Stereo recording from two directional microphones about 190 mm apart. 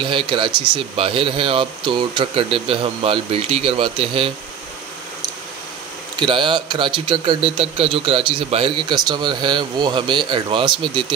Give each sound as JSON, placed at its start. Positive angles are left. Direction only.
{"t": 0.0, "sound": "a man's voice", "side_deg": -25}
{"t": 6.1, "sound": "a man's voice", "side_deg": -25}